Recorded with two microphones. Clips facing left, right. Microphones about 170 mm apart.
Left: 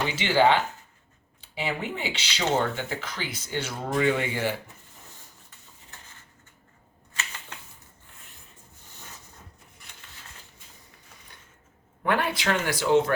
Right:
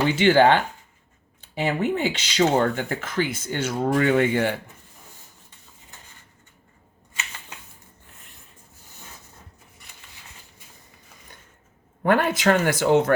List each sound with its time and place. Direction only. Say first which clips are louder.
0.2 s speech: right 4 dB; 55° right (ahead or behind)
12.0 s speech: right 6 dB; 45° right (ahead or behind)